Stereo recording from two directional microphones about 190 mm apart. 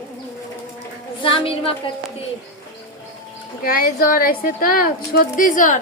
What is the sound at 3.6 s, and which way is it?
A woman's voice, 50° left (ahead or behind).